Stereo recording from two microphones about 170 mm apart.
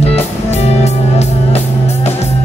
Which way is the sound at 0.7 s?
40° left (ahead or behind).